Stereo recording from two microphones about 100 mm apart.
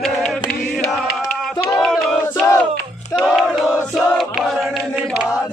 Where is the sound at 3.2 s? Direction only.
Centre (ahead or behind).